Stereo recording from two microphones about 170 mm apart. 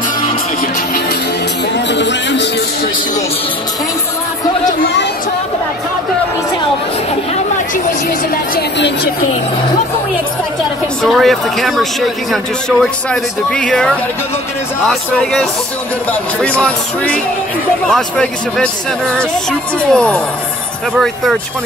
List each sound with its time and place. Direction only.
1.9 s music: 90° left
8.5 s a sound: 90° left
11.0 s speech: centre (ahead or behind)